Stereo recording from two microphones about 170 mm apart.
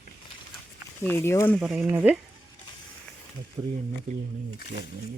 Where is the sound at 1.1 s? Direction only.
15° left (ahead or behind).